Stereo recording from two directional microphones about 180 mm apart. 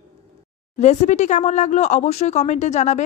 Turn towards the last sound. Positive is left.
turn(degrees=40)  # may be behind; listen again after turning